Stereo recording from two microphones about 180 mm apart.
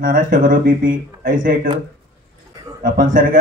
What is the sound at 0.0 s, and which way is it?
Speech, 50° right (ahead or behind).